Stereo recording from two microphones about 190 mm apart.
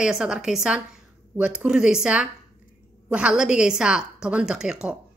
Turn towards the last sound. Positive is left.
turn(degrees=-5)  # may be behind; listen again after turning